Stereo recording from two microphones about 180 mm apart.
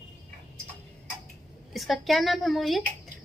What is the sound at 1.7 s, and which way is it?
A woman's voice, centre (ahead or behind).